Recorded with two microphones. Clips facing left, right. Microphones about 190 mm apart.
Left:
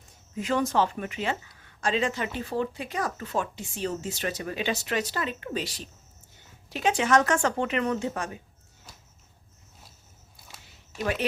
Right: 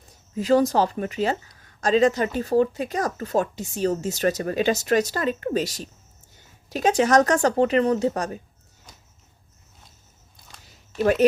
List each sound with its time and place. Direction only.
0.3 s speech: 35° right (ahead or behind)
11.0 s speech: 45° right (ahead or behind)